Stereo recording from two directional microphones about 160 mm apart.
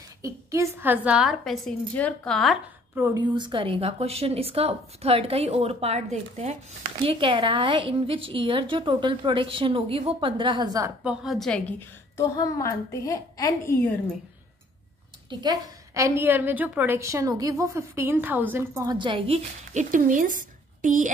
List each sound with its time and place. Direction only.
0.2 s a woman's voice: 20° right (ahead or behind); by 2.6 s centre (ahead or behind)
3.3 s a woman's voice: 30° right (ahead or behind)
11.1 s a woman's voice: centre (ahead or behind)
12.2 s a woman's voice: 20° left (ahead or behind)
15.2 s a woman's voice: 25° right (ahead or behind); by 21.1 s 55° right (ahead or behind)